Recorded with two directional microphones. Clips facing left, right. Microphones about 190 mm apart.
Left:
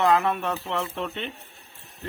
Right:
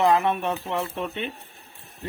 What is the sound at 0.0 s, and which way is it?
A man's voice, 15° right (ahead or behind).